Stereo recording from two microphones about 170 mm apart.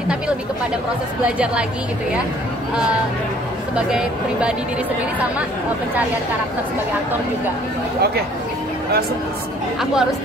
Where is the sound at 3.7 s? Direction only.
5° right (ahead or behind).